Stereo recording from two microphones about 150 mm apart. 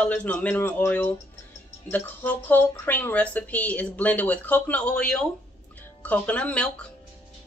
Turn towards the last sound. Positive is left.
turn(degrees=10)  # may be behind; listen again after turning